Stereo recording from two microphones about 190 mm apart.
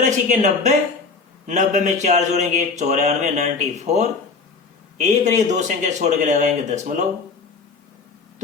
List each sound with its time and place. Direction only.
0.0 s a man's voice: 40° right (ahead or behind)